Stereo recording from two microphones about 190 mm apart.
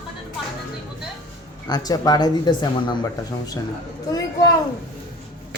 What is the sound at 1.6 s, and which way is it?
Speech, 20° left (ahead or behind).